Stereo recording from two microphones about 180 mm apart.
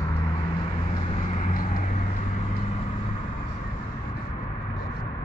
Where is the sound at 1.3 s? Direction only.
45° left (ahead or behind).